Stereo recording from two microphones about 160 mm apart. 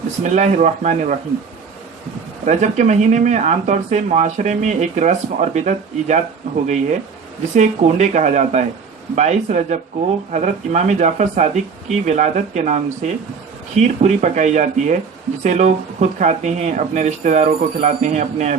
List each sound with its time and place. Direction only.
0.2 s speech: 50° right (ahead or behind)
2.4 s speech: 50° right (ahead or behind)